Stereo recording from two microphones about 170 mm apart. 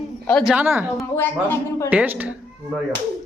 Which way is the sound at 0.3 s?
5° left (ahead or behind).